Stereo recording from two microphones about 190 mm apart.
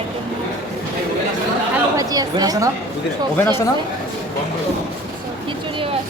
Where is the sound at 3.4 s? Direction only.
10° left (ahead or behind).